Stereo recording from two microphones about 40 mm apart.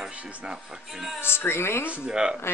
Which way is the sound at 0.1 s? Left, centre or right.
Right.